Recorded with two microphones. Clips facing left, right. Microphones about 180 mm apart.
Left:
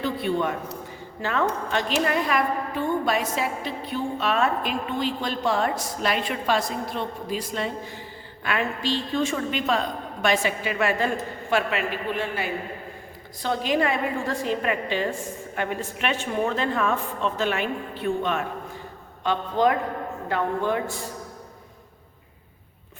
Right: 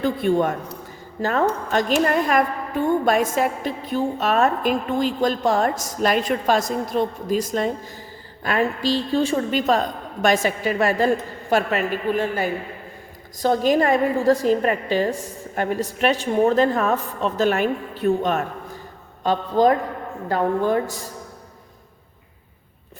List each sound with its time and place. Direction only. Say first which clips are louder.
0.0 s a woman's voice: right 5 dB; 45° right (ahead or behind)